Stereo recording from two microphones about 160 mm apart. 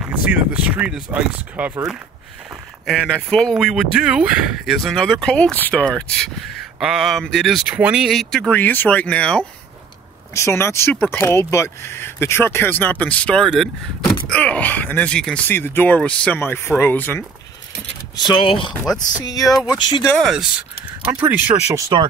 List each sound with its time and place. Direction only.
0.0 s speech: 10° right (ahead or behind)
2.9 s speech: 5° left (ahead or behind)
18.1 s speech: 30° left (ahead or behind)
20.2 s speech: 5° right (ahead or behind); by 22.0 s 20° right (ahead or behind)